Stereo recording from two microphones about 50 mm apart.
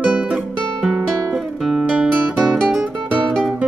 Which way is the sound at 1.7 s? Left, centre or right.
Right.